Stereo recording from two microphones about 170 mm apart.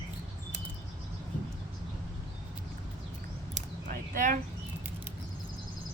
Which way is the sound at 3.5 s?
55° right (ahead or behind).